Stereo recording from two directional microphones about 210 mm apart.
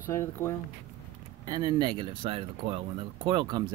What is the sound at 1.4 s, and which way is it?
Speech, 20° right (ahead or behind).